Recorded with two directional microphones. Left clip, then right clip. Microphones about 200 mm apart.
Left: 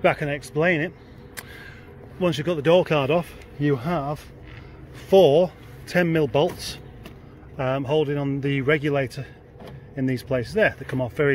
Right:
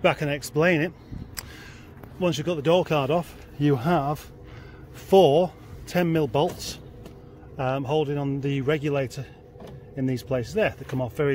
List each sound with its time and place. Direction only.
0.0 s speech: 10° right (ahead or behind)
2.1 s a man's voice: 5° left (ahead or behind)
3.5 s speech: 20° right (ahead or behind)
5.1 s a man's voice: 5° right (ahead or behind)